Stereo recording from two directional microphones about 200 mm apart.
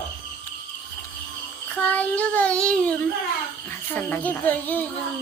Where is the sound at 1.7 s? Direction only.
10° left (ahead or behind).